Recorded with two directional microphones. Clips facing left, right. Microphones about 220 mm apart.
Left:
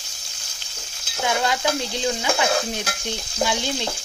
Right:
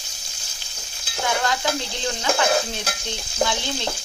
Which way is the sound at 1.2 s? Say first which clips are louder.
Left 1 dB; 15° left (ahead or behind).